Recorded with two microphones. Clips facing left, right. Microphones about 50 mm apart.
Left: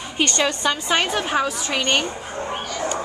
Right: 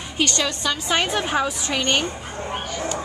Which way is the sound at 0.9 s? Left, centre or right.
Centre.